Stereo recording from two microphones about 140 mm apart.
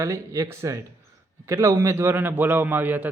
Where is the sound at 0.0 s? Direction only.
20° right (ahead or behind).